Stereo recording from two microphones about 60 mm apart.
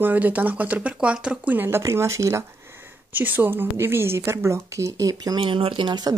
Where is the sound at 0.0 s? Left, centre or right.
Right.